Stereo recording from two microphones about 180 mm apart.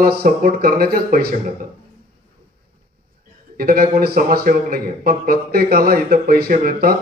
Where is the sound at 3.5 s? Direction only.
55° right (ahead or behind).